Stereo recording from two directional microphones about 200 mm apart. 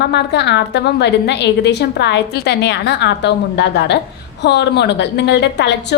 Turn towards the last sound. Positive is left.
turn(degrees=60)  # may be behind; listen again after turning